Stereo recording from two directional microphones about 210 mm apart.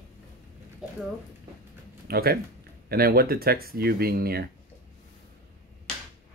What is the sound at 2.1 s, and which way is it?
Speech, 45° right (ahead or behind).